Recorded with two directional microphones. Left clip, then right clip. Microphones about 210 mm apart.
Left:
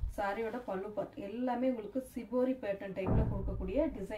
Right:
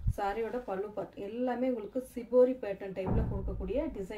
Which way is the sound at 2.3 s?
45° right (ahead or behind).